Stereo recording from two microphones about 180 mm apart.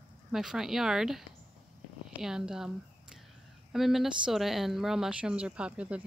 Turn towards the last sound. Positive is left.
turn(degrees=-5)  # may be behind; listen again after turning